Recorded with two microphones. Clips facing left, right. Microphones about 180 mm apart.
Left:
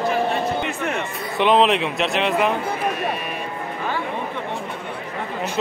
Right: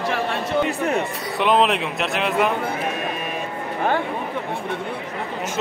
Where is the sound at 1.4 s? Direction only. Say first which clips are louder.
Left 2 dB; centre (ahead or behind).